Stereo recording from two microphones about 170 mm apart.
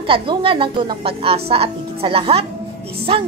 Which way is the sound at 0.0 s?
30° right (ahead or behind).